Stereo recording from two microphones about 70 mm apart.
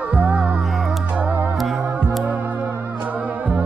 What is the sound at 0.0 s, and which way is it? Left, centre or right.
Music, right.